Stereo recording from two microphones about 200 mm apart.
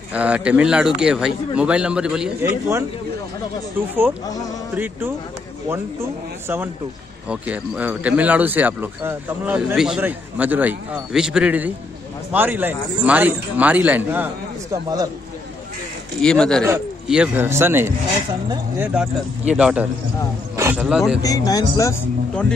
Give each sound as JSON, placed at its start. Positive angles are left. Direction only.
{"t": 0.1, "sound": "a man's voice", "side_deg": -5}
{"t": 6.4, "sound": "speech", "side_deg": -10}
{"t": 16.2, "sound": "a man's voice", "side_deg": 5}
{"t": 16.6, "sound": "a man's voice", "side_deg": -10}
{"t": 20.5, "sound": "a sound", "side_deg": -10}
{"t": 21.2, "sound": "speech", "side_deg": 20}